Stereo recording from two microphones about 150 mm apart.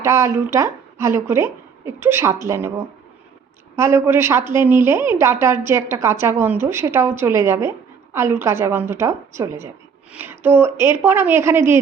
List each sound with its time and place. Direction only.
0.0 s a woman's voice: 20° right (ahead or behind)